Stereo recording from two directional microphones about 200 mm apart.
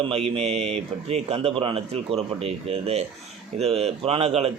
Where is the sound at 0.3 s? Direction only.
30° right (ahead or behind).